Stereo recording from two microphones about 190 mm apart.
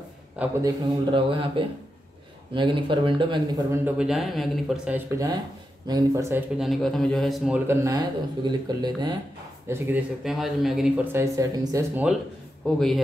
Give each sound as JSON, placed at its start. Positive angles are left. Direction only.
{"t": 0.4, "sound": "a man's voice", "side_deg": -15}
{"t": 1.1, "sound": "speech", "side_deg": -25}
{"t": 3.7, "sound": "a man's voice", "side_deg": -5}
{"t": 9.7, "sound": "a man's voice", "side_deg": -10}
{"t": 12.6, "sound": "speech", "side_deg": 0}